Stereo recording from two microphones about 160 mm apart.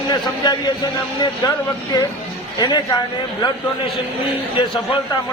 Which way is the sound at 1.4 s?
25° left (ahead or behind).